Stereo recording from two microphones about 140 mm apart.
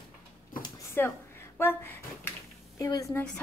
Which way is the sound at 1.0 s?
15° left (ahead or behind).